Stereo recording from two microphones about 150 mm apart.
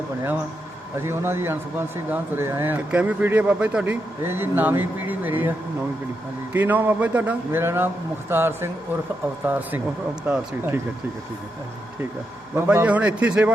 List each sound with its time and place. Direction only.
0.9 s speech: 15° right (ahead or behind)
12.5 s speech: 15° right (ahead or behind)